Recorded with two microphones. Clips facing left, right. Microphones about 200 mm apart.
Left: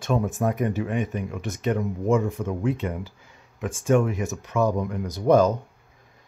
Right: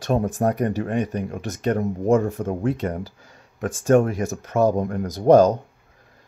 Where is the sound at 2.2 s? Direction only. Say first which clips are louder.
Right 2 dB; 50° right (ahead or behind).